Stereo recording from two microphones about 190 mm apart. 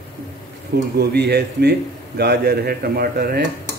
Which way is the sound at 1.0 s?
60° right (ahead or behind).